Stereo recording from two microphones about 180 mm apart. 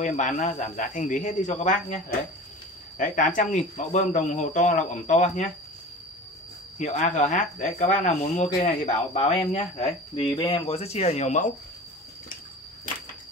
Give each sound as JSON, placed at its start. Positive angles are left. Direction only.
{"t": 0.0, "sound": "speech", "side_deg": 45}
{"t": 6.8, "sound": "speech", "side_deg": 40}